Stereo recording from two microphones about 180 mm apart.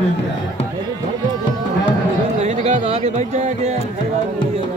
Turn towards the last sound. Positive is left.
turn(degrees=-40)  # may be behind; listen again after turning